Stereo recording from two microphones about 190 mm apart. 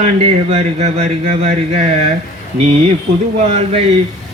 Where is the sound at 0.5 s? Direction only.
35° right (ahead or behind).